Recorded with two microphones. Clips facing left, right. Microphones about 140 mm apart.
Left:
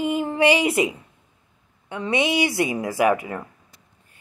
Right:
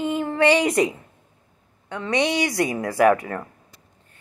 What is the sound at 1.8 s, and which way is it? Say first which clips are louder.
A woman's voice: even; 15° left (ahead or behind).